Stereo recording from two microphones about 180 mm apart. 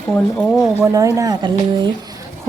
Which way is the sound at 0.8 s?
15° right (ahead or behind).